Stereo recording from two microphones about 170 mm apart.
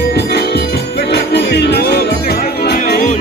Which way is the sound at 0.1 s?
75° left (ahead or behind).